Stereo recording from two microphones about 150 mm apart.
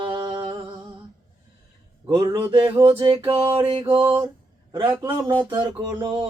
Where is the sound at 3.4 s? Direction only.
15° right (ahead or behind).